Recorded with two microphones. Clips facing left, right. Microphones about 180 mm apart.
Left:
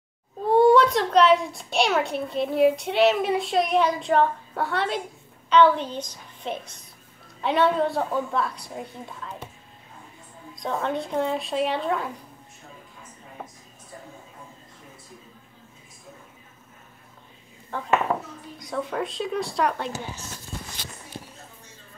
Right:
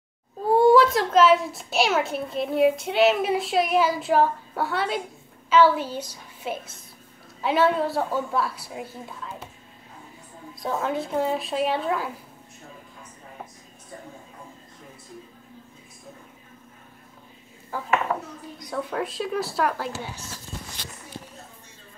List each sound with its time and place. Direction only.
0.5 s a woman's voice: centre (ahead or behind)
10.5 s a woman's voice: 5° right (ahead or behind)
17.7 s a woman's voice: 5° right (ahead or behind)